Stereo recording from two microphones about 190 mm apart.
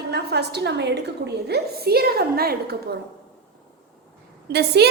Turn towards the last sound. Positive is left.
turn(degrees=-60)  # may be behind; listen again after turning